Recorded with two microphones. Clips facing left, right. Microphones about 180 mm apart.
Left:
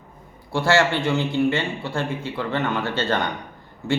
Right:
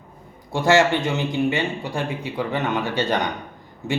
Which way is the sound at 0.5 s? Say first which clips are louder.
Right 2 dB; 20° right (ahead or behind).